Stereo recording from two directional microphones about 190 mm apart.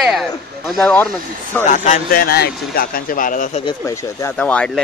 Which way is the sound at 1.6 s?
40° left (ahead or behind).